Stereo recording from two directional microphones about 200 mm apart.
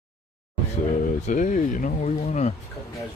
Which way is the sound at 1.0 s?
40° left (ahead or behind).